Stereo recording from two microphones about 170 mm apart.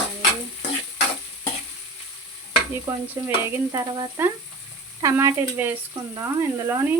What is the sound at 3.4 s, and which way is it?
Speech, 15° right (ahead or behind).